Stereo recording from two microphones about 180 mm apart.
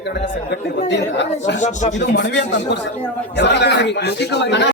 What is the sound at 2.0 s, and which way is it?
A man's voice, 75° left (ahead or behind).